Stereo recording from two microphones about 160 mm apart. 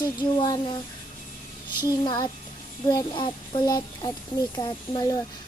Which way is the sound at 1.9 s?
25° left (ahead or behind).